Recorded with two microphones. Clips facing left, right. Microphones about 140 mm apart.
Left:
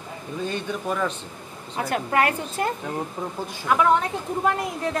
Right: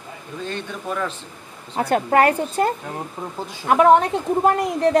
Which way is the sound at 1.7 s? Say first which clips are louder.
Right 5 dB; 35° right (ahead or behind).